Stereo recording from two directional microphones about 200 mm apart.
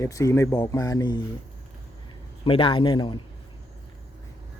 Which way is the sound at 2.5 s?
25° left (ahead or behind).